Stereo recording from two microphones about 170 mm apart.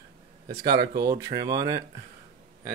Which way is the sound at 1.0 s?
20° right (ahead or behind).